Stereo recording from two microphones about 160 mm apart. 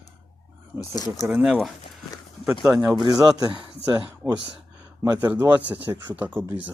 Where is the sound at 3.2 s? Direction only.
20° right (ahead or behind).